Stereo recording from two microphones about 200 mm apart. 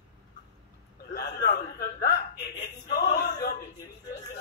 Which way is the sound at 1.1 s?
55° left (ahead or behind).